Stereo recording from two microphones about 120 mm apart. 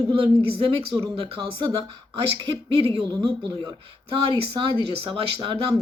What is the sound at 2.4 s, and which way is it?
A woman's voice, 40° right (ahead or behind).